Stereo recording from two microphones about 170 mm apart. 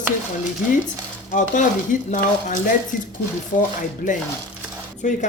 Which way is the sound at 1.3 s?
50° left (ahead or behind).